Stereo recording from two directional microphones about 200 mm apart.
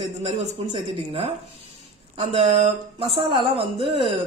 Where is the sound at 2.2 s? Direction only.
30° right (ahead or behind).